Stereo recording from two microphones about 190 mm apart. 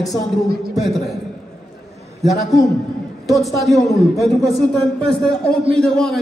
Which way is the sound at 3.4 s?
Centre (ahead or behind).